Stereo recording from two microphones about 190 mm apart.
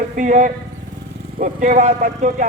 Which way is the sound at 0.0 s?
45° right (ahead or behind).